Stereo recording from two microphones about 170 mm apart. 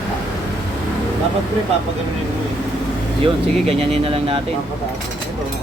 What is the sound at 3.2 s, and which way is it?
Speech, 35° right (ahead or behind).